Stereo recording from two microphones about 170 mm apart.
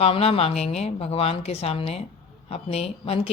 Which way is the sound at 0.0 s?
35° left (ahead or behind).